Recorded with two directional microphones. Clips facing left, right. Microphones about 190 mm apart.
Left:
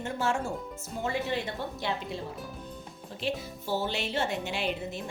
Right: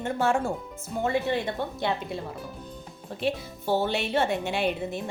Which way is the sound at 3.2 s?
55° right (ahead or behind).